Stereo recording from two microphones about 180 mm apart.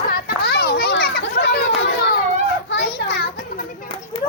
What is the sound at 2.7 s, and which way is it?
Children playing, 75° left (ahead or behind).